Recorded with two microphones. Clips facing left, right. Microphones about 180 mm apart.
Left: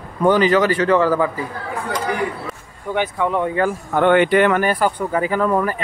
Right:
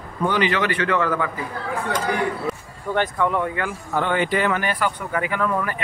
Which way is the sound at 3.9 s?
60° left (ahead or behind).